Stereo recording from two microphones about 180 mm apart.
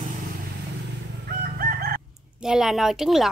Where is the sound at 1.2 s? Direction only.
50° right (ahead or behind).